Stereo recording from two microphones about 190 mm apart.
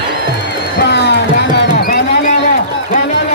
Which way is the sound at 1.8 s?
50° left (ahead or behind).